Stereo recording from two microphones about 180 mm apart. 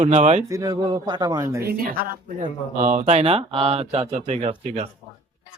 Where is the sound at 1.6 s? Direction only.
55° right (ahead or behind).